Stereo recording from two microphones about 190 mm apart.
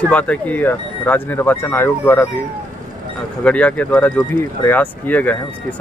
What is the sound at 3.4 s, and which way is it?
Speech, 5° left (ahead or behind).